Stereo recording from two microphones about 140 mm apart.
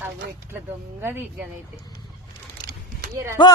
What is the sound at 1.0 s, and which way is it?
Speech, 15° right (ahead or behind).